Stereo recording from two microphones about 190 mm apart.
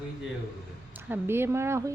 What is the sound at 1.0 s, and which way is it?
Speech, 10° right (ahead or behind).